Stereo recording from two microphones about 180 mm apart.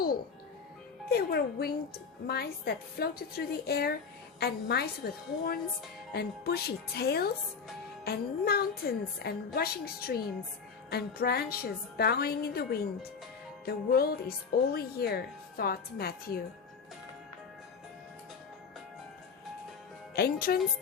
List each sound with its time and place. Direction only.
1.1 s a woman's voice: 60° left (ahead or behind)
20.1 s a woman's voice: 60° left (ahead or behind)